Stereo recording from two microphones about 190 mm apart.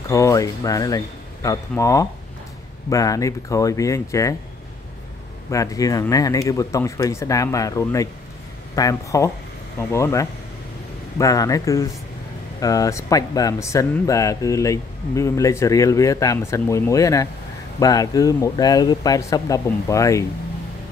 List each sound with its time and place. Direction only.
0.1 s speech: 15° left (ahead or behind)
5.5 s speech: 15° left (ahead or behind)